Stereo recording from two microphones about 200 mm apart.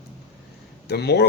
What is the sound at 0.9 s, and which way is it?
Speech, 55° left (ahead or behind).